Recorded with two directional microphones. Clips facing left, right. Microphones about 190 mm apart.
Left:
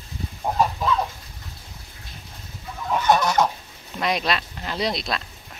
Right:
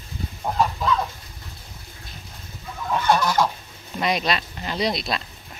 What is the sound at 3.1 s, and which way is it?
Fowl, 20° left (ahead or behind).